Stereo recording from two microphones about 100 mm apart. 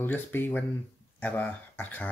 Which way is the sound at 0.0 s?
20° left (ahead or behind).